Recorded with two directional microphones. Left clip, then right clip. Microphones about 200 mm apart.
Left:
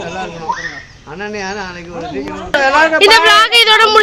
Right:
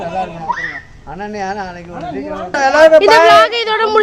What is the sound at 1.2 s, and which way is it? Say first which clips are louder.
Speech: even; 55° right (ahead or behind).